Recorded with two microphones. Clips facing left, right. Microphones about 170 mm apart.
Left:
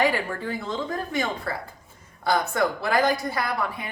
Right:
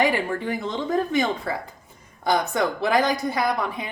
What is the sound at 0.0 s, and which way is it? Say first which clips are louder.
A woman's voice: right 2 dB; 20° right (ahead or behind).